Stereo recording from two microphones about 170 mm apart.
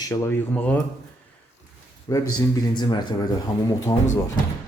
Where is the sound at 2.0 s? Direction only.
20° left (ahead or behind).